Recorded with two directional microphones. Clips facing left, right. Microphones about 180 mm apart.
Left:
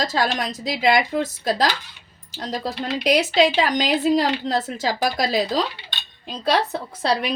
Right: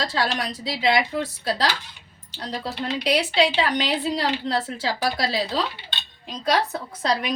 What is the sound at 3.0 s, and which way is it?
A woman's voice, 45° left (ahead or behind).